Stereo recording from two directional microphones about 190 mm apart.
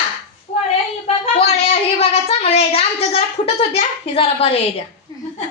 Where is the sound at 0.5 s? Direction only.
30° left (ahead or behind).